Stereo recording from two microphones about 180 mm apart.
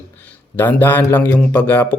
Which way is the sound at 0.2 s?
10° left (ahead or behind).